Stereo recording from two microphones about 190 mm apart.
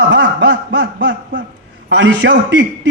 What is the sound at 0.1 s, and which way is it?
Snicker, 65° right (ahead or behind).